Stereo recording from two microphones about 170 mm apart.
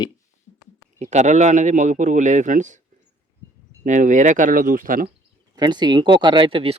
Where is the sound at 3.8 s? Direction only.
45° right (ahead or behind).